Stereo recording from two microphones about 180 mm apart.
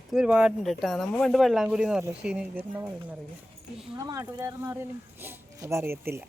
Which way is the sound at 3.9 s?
15° right (ahead or behind).